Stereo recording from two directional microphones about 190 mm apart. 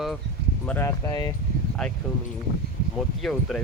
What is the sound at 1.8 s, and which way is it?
Speech, 5° left (ahead or behind).